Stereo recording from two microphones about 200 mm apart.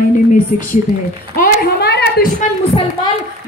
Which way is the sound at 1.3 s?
50° left (ahead or behind).